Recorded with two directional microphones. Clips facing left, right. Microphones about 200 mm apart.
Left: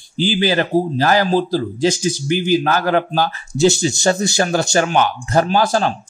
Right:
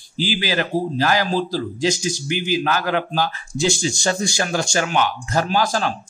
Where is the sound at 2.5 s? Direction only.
45° left (ahead or behind).